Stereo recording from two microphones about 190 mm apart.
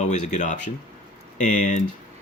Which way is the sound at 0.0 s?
40° left (ahead or behind).